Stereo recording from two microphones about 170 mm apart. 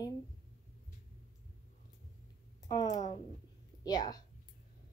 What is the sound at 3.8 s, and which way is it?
Speech, 25° left (ahead or behind).